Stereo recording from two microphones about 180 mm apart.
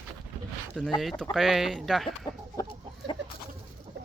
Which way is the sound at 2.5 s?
25° left (ahead or behind).